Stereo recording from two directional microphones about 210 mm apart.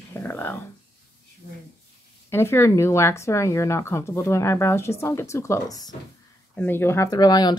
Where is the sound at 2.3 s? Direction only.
10° left (ahead or behind).